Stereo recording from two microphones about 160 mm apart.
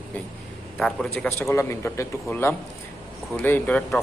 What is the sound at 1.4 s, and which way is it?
Speech, 15° left (ahead or behind).